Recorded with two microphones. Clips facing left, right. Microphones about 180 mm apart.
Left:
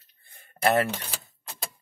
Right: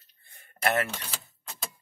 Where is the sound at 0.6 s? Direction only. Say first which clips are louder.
Left 5 dB; 35° left (ahead or behind).